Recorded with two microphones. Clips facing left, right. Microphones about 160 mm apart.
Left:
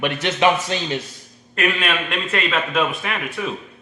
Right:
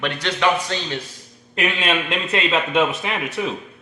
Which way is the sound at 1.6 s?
25° right (ahead or behind).